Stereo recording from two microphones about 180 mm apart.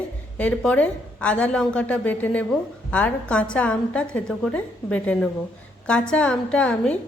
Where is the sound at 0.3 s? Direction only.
5° left (ahead or behind).